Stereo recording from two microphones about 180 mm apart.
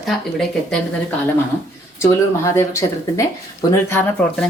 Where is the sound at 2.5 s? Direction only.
15° left (ahead or behind).